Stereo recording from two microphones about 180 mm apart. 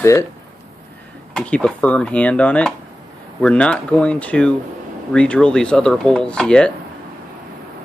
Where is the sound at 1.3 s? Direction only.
5° left (ahead or behind).